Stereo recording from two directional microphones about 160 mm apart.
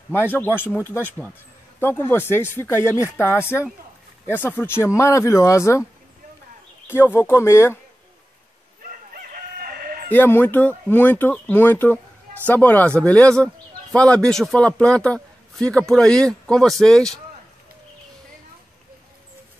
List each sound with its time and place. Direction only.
0.1 s speech: 10° left (ahead or behind)
6.9 s speech: 15° left (ahead or behind)
9.2 s crowing: 60° right (ahead or behind)
10.0 s a man's voice: 10° left (ahead or behind)